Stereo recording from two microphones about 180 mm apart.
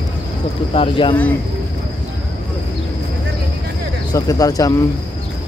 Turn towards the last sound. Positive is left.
turn(degrees=20)  # may be behind; listen again after turning